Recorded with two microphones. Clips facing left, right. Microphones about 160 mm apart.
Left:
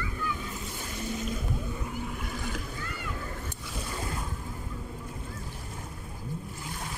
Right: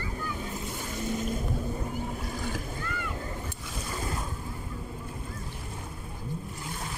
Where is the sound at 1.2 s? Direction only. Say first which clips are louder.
Right 2 dB; 45° right (ahead or behind).